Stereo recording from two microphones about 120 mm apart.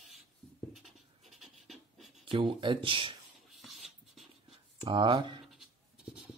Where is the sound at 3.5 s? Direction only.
Centre (ahead or behind).